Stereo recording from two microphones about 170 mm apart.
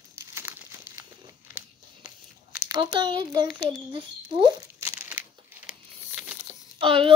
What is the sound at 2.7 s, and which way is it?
A child's voice, 25° right (ahead or behind).